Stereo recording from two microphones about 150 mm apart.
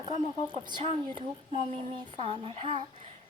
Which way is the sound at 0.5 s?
35° right (ahead or behind).